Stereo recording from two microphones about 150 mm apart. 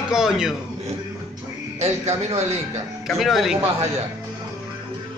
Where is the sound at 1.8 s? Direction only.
45° right (ahead or behind).